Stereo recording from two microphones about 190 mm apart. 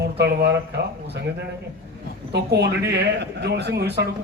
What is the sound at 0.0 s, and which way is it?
A man's voice, 60° right (ahead or behind).